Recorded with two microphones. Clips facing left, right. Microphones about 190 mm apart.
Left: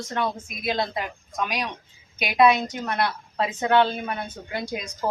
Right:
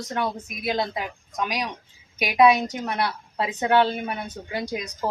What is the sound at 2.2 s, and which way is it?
A woman's voice, 15° right (ahead or behind).